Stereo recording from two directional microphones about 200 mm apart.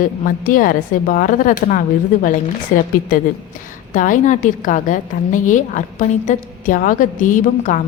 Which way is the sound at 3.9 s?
40° left (ahead or behind).